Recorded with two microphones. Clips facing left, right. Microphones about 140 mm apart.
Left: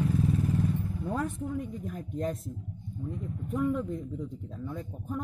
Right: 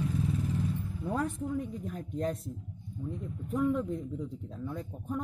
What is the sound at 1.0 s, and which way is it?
Speech, centre (ahead or behind).